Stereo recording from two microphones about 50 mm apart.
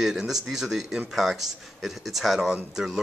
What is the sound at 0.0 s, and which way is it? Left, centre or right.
Speech, centre.